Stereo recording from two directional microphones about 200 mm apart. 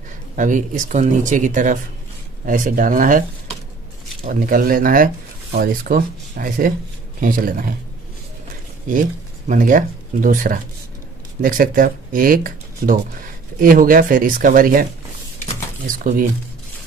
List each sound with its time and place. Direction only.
0.4 s speech: 40° right (ahead or behind)
4.3 s speech: 45° right (ahead or behind)
9.5 s speech: 40° right (ahead or behind)
15.9 s speech: 40° right (ahead or behind)